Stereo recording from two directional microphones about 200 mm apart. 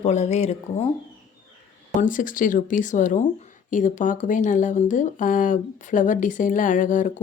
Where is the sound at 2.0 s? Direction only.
40° left (ahead or behind).